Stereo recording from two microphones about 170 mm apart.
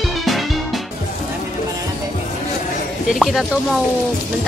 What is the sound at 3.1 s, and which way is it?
Music, centre (ahead or behind).